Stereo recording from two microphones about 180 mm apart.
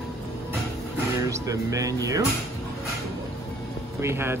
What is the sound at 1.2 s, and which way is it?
Speech, 20° right (ahead or behind).